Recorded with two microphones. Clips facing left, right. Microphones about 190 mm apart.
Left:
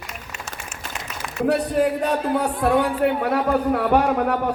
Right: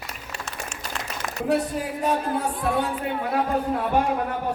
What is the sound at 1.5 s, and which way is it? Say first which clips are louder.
A man's voice: left 5 dB; 65° left (ahead or behind).